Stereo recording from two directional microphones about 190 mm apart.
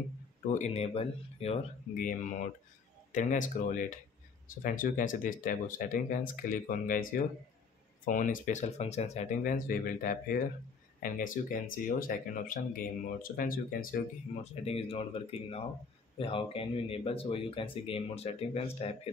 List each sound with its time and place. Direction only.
0.5 s speech: 35° left (ahead or behind)
9.4 s speech: 50° left (ahead or behind)
14.4 s speech: 35° left (ahead or behind)